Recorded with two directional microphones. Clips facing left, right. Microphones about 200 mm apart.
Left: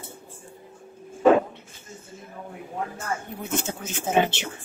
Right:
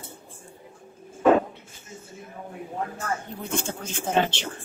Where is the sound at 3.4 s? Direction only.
5° left (ahead or behind).